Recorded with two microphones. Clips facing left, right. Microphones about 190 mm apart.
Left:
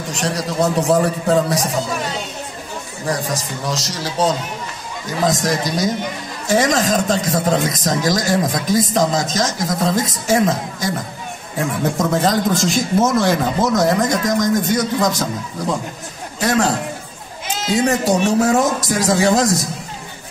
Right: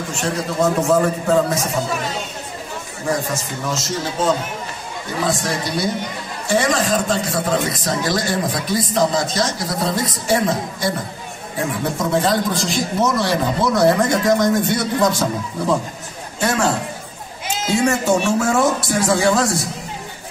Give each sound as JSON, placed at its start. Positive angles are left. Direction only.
{"t": 0.1, "sound": "a man's voice", "side_deg": 35}
{"t": 3.1, "sound": "a man's voice", "side_deg": 35}
{"t": 12.1, "sound": "speech", "side_deg": 40}
{"t": 16.3, "sound": "a man's voice", "side_deg": 40}
{"t": 17.7, "sound": "a man's voice", "side_deg": 35}